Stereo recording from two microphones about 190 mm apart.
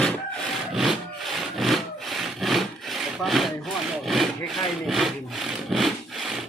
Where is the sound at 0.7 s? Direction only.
Centre (ahead or behind).